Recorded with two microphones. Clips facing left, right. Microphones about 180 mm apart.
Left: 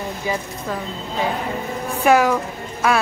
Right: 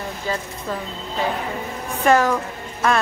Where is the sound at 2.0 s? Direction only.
10° left (ahead or behind).